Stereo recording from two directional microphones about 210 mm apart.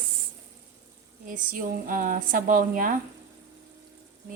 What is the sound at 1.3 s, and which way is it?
A woman's voice, 40° right (ahead or behind).